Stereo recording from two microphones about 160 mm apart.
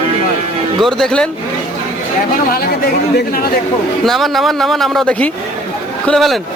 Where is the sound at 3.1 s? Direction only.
70° left (ahead or behind).